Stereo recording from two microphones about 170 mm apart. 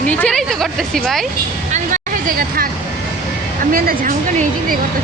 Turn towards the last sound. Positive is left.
turn(degrees=-60)  # may be behind; listen again after turning